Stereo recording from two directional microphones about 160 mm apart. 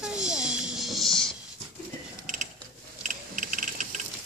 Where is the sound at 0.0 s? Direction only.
5° right (ahead or behind).